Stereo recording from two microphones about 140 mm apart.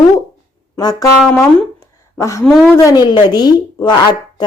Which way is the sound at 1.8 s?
20° left (ahead or behind).